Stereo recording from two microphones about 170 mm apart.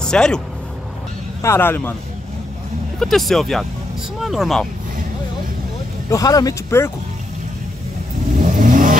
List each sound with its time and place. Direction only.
0.0 s speech: 5° left (ahead or behind)
1.4 s speech: 15° left (ahead or behind)
3.0 s speech: centre (ahead or behind)
6.0 s speech: 20° left (ahead or behind)
8.4 s vehicle: 55° right (ahead or behind)